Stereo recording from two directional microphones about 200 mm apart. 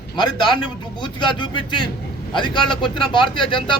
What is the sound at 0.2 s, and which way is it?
A man's voice, 20° left (ahead or behind).